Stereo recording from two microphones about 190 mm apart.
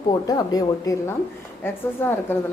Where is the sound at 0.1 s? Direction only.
20° left (ahead or behind).